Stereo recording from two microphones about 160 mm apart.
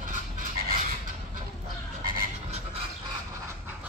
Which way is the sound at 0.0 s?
60° right (ahead or behind).